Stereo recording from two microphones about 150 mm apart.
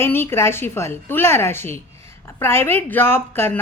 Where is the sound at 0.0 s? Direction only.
15° left (ahead or behind).